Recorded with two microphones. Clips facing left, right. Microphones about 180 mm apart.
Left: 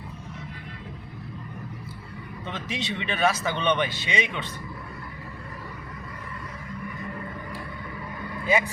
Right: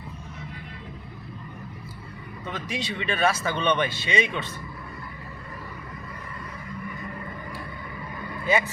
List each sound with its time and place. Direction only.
2.5 s speech: 25° left (ahead or behind)